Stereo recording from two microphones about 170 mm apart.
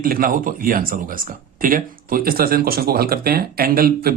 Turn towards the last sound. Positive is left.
turn(degrees=-60)  # may be behind; listen again after turning